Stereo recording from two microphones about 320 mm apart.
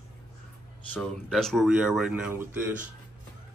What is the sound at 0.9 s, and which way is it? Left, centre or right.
Speech, centre.